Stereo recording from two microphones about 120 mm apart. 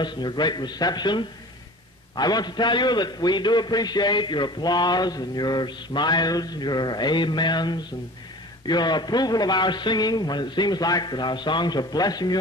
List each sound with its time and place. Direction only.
0.0 s a man's voice: 40° left (ahead or behind)